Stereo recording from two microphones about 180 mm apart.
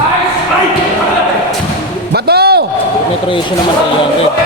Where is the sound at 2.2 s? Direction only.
60° right (ahead or behind).